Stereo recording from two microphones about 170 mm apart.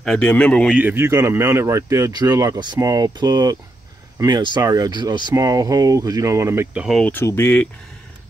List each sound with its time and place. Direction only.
0.0 s speech: 5° left (ahead or behind)
0.7 s speech: 10° right (ahead or behind)
7.0 s speech: 10° left (ahead or behind)